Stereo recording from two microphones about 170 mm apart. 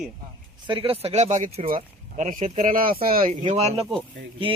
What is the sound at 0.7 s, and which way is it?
A man's voice, 35° right (ahead or behind).